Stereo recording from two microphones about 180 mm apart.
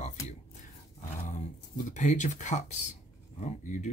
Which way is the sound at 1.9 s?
40° left (ahead or behind).